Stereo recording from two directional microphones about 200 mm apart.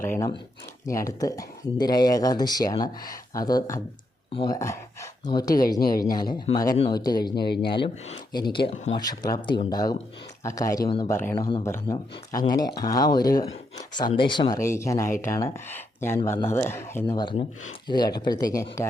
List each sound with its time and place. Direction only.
0.0 s speech: 15° left (ahead or behind)
7.3 s speech: 55° left (ahead or behind)
7.7 s speech: 25° left (ahead or behind)